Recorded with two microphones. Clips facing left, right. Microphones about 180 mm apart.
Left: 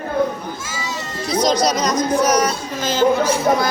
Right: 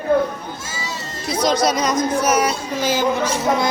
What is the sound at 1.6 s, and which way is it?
A woman's voice, centre (ahead or behind).